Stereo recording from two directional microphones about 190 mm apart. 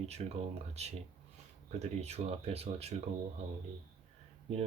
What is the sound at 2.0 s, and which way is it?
Speech, 35° right (ahead or behind).